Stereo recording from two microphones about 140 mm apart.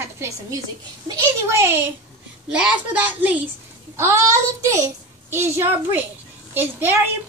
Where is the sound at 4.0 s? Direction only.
20° right (ahead or behind).